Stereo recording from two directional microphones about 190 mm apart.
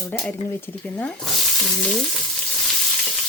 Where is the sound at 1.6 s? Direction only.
5° left (ahead or behind).